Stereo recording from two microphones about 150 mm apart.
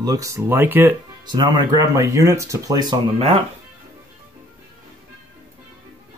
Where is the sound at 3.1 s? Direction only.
40° right (ahead or behind).